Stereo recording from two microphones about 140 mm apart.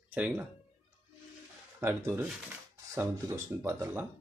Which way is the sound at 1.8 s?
15° right (ahead or behind).